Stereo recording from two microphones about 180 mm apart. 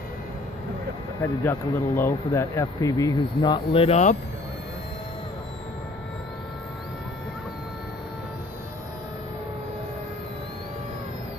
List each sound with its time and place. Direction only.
1.2 s speech: 10° left (ahead or behind); by 4.2 s 40° left (ahead or behind)